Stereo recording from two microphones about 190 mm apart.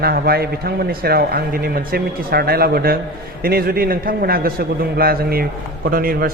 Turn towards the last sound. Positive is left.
turn(degrees=-50)  # may be behind; listen again after turning